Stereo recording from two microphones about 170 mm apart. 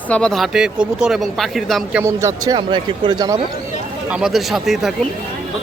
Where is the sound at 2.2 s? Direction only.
20° right (ahead or behind).